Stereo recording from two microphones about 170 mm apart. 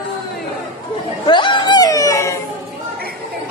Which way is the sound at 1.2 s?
25° left (ahead or behind).